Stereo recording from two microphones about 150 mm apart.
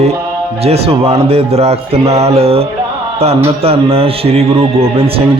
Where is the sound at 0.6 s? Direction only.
40° right (ahead or behind).